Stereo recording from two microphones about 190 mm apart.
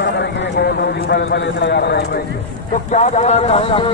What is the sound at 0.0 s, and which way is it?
Clip-clop, 60° left (ahead or behind).